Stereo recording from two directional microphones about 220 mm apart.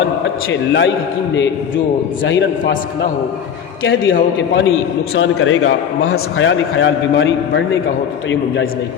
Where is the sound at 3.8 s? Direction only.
60° left (ahead or behind).